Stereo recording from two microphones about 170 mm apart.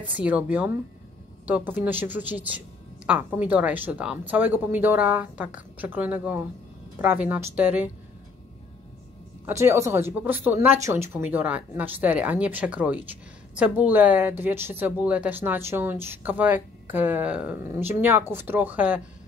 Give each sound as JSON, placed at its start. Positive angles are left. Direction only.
{"t": 0.1, "sound": "speech", "side_deg": -10}
{"t": 9.5, "sound": "speech", "side_deg": -15}